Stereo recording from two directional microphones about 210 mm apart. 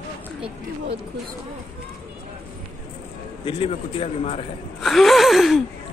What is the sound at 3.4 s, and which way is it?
Speech, 25° left (ahead or behind).